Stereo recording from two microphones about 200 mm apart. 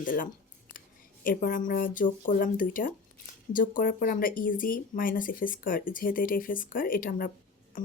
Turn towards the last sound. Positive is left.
turn(degrees=45)  # may be behind; listen again after turning